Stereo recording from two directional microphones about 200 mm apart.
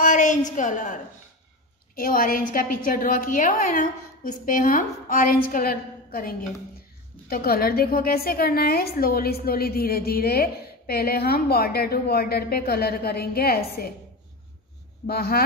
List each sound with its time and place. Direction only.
0.0 s a sound: 40° left (ahead or behind)
2.0 s a woman's voice: 45° left (ahead or behind)
15.0 s a woman's voice: 50° left (ahead or behind)